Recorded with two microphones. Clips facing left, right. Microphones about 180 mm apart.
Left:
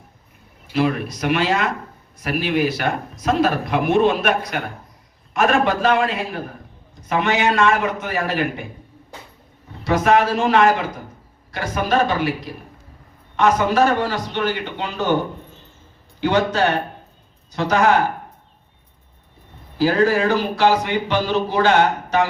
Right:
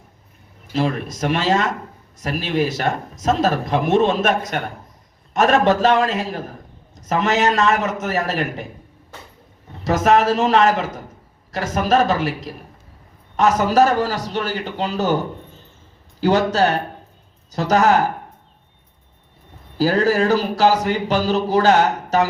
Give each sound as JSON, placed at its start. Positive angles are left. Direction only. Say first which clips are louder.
{"t": 0.7, "sound": "speech", "louder": "left 1 dB", "side_deg": -30}
{"t": 9.8, "sound": "speech", "louder": "right 1 dB", "side_deg": -40}
{"t": 13.3, "sound": "speech", "louder": "right 1 dB", "side_deg": -40}
{"t": 19.8, "sound": "speech", "louder": "even", "side_deg": -40}